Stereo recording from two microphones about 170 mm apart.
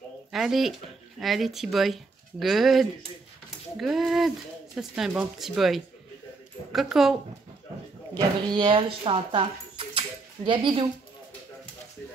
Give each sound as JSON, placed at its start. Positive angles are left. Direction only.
{"t": 0.3, "sound": "speech", "side_deg": 0}
{"t": 8.5, "sound": "speech", "side_deg": -30}